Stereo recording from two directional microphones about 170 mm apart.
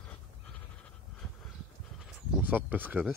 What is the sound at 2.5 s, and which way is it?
Speech, 10° right (ahead or behind).